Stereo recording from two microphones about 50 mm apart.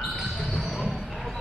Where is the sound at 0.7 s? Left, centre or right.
Centre.